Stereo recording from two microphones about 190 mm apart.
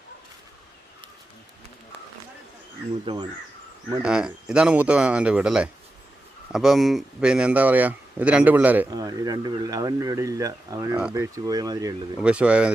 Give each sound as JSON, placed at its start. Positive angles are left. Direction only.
{"t": 3.1, "sound": "speech", "side_deg": -25}
{"t": 4.0, "sound": "speech", "side_deg": -5}
{"t": 8.9, "sound": "speech", "side_deg": -20}
{"t": 12.1, "sound": "speech", "side_deg": -5}